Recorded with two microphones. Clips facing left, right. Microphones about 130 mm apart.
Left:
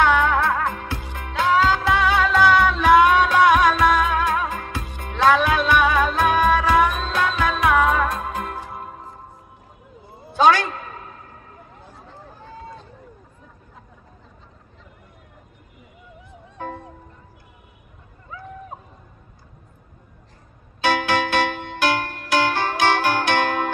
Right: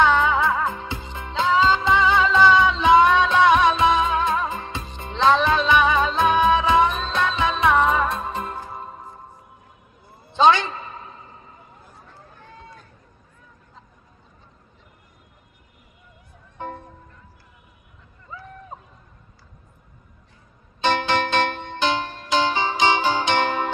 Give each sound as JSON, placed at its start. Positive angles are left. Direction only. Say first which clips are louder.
{"t": 0.2, "sound": "music", "louder": "left 1 dB", "side_deg": -10}
{"t": 1.0, "sound": "music", "louder": "left 1 dB", "side_deg": 5}
{"t": 10.3, "sound": "a sound", "louder": "even", "side_deg": 5}
{"t": 11.2, "sound": "horse", "louder": "left 2 dB", "side_deg": 0}
{"t": 12.4, "sound": "run", "louder": "left 6 dB", "side_deg": 30}
{"t": 16.5, "sound": "music", "louder": "left 1 dB", "side_deg": 5}
{"t": 20.8, "sound": "music", "louder": "left 1 dB", "side_deg": 10}